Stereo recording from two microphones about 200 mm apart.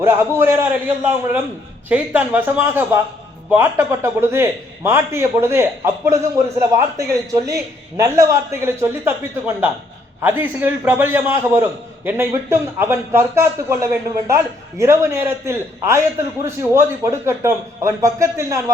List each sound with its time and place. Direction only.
0.0 s a man's voice: 10° right (ahead or behind)
10.2 s a man's voice: 10° right (ahead or behind)